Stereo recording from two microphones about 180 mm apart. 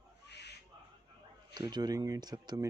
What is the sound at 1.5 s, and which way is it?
Speech, 25° right (ahead or behind).